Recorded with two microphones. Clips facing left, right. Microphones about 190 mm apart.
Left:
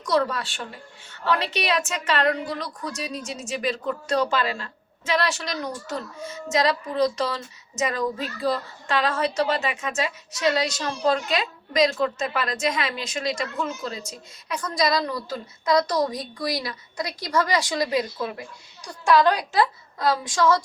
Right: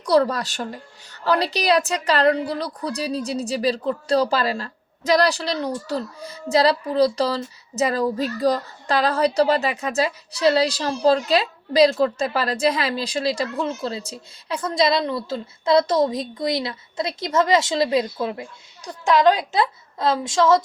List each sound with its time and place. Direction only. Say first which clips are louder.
0.0 s a woman's voice: right 5 dB; 35° right (ahead or behind)